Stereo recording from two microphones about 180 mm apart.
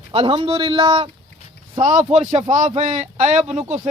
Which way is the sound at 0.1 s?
30° right (ahead or behind).